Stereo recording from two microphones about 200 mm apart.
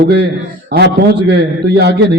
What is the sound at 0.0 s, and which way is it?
A man's voice, 55° right (ahead or behind).